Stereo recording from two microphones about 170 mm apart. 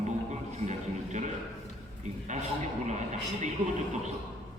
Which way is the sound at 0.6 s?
45° right (ahead or behind).